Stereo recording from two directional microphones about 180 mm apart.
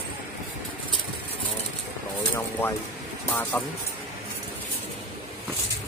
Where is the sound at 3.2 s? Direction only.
10° left (ahead or behind).